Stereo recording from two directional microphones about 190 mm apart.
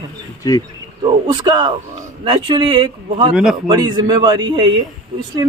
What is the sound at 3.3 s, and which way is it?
Speech, 5° right (ahead or behind).